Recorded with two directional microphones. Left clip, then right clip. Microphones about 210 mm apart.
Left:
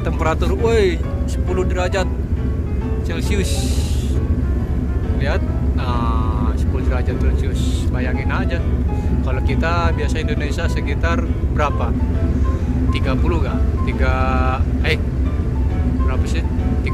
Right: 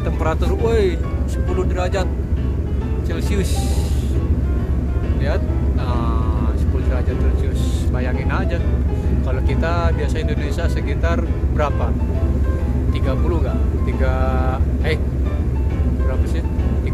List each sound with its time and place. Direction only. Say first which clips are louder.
0.2 s speech: left 2 dB; centre (ahead or behind)
8.0 s speech: left 1 dB; 20° right (ahead or behind)
9.6 s speech: left 2 dB; 10° right (ahead or behind)
11.1 s a sound: left 1 dB; 10° right (ahead or behind)
14.0 s speech: left 3 dB; 10° right (ahead or behind)